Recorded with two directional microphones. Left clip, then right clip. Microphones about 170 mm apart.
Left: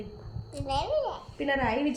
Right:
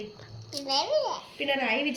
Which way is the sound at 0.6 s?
10° left (ahead or behind).